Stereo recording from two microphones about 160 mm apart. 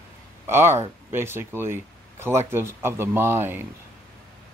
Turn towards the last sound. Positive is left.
turn(degrees=-15)  # may be behind; listen again after turning